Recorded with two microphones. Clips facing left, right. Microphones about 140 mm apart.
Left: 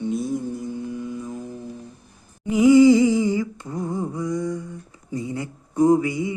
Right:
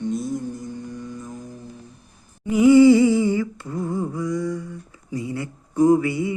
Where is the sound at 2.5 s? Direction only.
15° left (ahead or behind).